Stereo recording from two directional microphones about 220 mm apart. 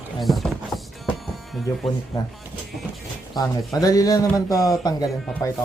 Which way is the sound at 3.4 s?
15° left (ahead or behind).